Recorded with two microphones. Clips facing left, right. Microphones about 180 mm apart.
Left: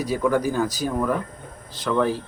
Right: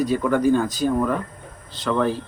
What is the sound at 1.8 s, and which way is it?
Speech, 10° left (ahead or behind).